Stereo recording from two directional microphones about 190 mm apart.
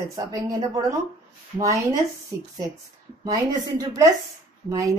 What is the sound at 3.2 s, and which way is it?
Speech, 20° right (ahead or behind).